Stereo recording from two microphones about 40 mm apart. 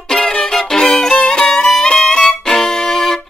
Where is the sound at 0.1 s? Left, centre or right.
Centre.